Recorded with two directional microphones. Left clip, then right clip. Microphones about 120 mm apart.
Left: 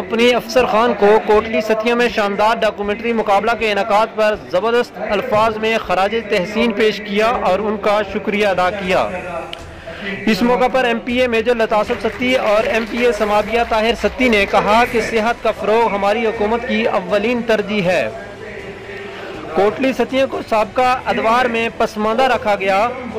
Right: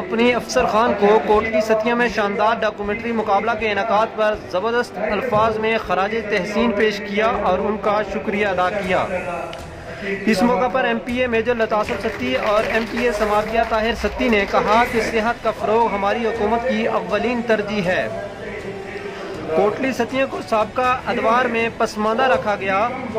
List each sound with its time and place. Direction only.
0.1 s speech: 25° left (ahead or behind)
10.2 s speech: 25° left (ahead or behind)
19.8 s speech: 25° left (ahead or behind)